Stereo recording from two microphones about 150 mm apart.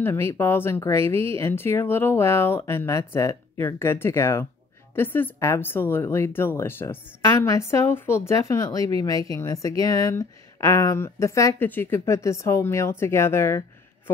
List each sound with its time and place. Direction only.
0.0 s speech: 15° left (ahead or behind)